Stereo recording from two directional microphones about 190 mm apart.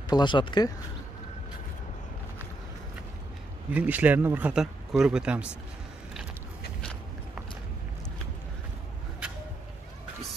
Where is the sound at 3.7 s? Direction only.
10° right (ahead or behind).